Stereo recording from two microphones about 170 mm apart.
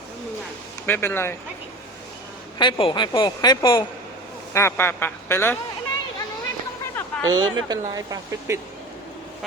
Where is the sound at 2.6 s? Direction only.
25° left (ahead or behind).